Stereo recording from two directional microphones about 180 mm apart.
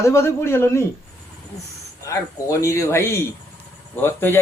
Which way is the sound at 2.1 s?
15° left (ahead or behind).